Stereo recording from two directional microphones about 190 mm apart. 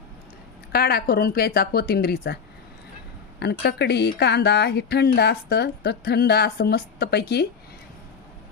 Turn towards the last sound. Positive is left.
turn(degrees=60)  # may be behind; listen again after turning